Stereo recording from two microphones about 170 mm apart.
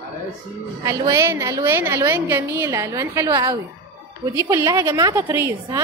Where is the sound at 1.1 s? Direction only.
20° right (ahead or behind).